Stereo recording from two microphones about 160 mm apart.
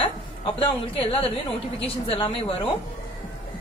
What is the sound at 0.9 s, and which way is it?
A woman's voice, 35° left (ahead or behind).